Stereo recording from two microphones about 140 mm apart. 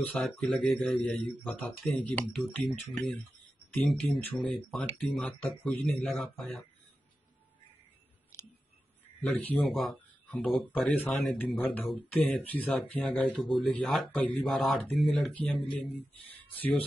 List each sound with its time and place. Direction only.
0.1 s speech: 10° left (ahead or behind)
9.4 s speech: 10° left (ahead or behind)